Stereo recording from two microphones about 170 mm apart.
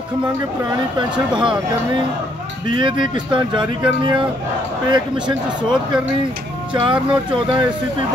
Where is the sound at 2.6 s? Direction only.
30° right (ahead or behind).